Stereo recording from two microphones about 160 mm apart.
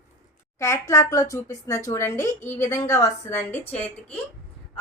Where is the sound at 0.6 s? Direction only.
20° left (ahead or behind).